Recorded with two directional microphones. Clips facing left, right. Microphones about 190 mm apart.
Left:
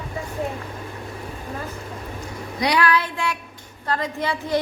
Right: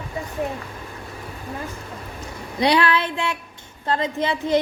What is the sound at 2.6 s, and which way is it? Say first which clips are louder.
A woman's voice: right 2 dB; 25° right (ahead or behind).